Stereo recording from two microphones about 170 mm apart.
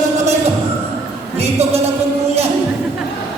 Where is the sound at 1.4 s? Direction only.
40° right (ahead or behind).